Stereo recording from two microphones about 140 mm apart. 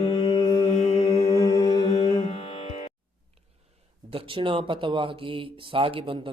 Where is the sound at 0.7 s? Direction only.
55° left (ahead or behind).